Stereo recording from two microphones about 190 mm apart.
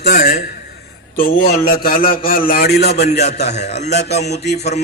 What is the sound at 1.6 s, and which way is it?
A man's voice, 50° left (ahead or behind).